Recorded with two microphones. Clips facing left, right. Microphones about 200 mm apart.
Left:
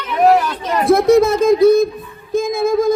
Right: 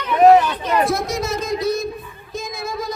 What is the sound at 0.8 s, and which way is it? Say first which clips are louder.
Speech: left 11 dB; 55° left (ahead or behind).